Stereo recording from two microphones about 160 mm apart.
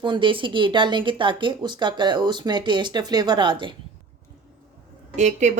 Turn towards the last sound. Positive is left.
turn(degrees=-45)  # may be behind; listen again after turning